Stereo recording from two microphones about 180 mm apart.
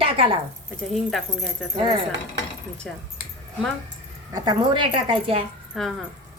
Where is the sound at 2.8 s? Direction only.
Centre (ahead or behind).